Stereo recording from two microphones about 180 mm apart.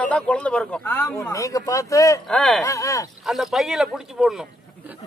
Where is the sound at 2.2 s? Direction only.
Centre (ahead or behind).